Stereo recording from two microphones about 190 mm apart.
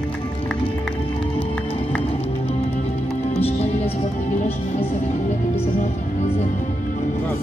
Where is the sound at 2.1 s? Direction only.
30° left (ahead or behind).